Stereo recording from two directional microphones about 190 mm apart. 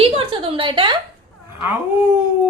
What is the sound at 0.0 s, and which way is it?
Speech, 30° right (ahead or behind).